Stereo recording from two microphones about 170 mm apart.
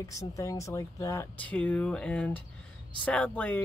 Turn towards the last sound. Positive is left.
turn(degrees=10)  # may be behind; listen again after turning